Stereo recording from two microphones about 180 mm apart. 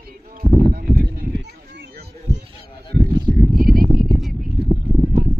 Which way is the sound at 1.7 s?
70° right (ahead or behind).